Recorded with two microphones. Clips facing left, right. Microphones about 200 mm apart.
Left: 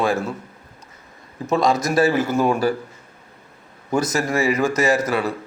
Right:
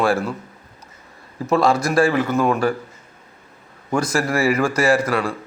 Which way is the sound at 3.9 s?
25° left (ahead or behind).